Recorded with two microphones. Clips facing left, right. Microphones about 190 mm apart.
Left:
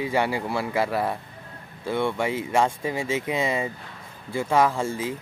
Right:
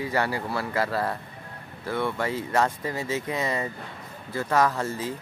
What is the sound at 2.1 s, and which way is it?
Speech, 10° left (ahead or behind).